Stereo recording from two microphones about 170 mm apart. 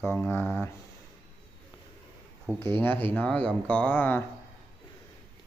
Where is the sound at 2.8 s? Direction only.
10° left (ahead or behind).